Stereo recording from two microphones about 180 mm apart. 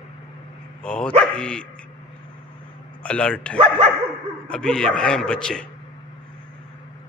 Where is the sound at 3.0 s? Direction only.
5° left (ahead or behind).